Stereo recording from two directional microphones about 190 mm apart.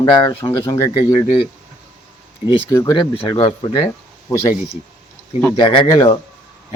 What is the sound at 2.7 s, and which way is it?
Speech, 20° left (ahead or behind).